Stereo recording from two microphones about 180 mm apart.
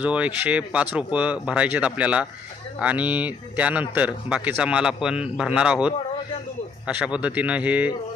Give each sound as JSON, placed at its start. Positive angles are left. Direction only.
{"t": 0.0, "sound": "speech", "side_deg": -5}